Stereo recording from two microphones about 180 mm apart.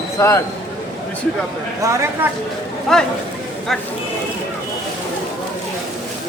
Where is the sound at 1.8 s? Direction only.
15° right (ahead or behind).